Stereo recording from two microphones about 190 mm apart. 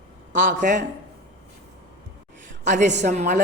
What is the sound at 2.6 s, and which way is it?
Speech, 40° right (ahead or behind).